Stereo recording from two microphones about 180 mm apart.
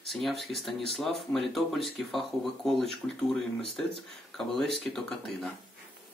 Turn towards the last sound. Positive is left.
turn(degrees=0)  # may be behind; listen again after turning